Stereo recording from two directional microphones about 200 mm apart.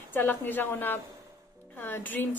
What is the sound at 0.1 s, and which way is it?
A woman's voice, 10° left (ahead or behind).